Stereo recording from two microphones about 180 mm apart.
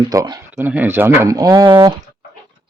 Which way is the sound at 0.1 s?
20° right (ahead or behind).